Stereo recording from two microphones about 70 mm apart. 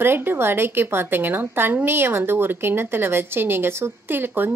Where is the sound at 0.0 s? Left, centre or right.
Right.